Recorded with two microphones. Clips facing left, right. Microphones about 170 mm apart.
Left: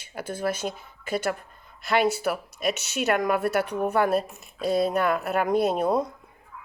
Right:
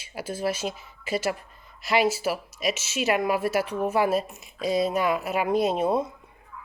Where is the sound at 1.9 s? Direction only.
5° right (ahead or behind).